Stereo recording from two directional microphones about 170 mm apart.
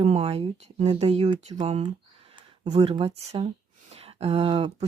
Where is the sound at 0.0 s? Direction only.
35° right (ahead or behind).